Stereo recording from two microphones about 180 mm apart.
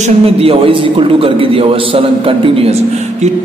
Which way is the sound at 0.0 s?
30° right (ahead or behind).